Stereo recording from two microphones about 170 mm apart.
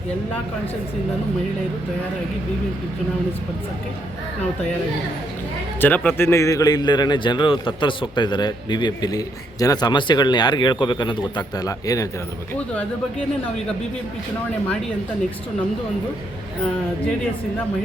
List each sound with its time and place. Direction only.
5.8 s a man's voice: 10° left (ahead or behind)